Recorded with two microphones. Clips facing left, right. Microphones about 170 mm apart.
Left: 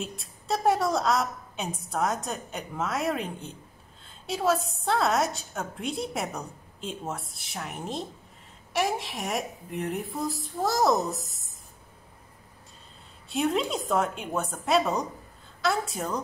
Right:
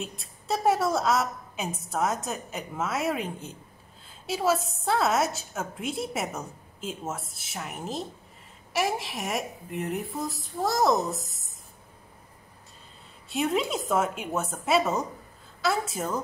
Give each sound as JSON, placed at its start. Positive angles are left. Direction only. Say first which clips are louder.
{"t": 0.0, "sound": "a woman's voice", "louder": "left 1 dB", "side_deg": 0}
{"t": 13.3, "sound": "a woman's voice", "louder": "even", "side_deg": 0}